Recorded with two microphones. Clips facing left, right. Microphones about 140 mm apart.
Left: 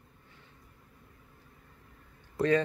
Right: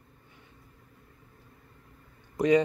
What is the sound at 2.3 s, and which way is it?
Speech, 15° right (ahead or behind).